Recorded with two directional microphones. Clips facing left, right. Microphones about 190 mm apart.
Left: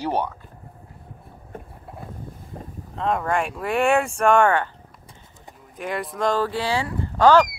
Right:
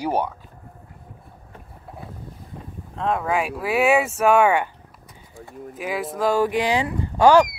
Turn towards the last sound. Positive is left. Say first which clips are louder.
# right 1 dB
turn(degrees=-15)  # may be behind; listen again after turning